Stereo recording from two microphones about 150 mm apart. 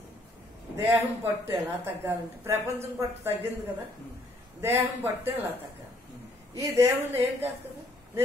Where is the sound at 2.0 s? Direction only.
15° right (ahead or behind).